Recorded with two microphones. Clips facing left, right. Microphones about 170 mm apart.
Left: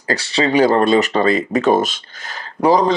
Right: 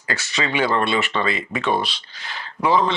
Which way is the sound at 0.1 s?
35° left (ahead or behind).